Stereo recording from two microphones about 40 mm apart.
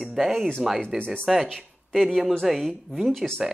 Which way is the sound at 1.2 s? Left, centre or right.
Centre.